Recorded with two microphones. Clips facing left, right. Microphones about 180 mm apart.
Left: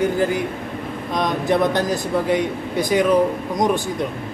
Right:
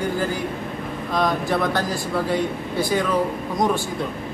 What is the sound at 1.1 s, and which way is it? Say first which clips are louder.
Speech: left 2 dB; 20° left (ahead or behind).